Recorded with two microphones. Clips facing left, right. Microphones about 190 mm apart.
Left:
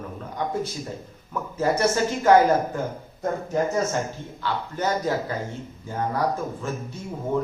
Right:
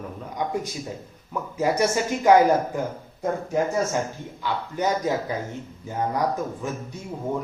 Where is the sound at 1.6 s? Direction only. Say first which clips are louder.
Left 1 dB; 15° right (ahead or behind).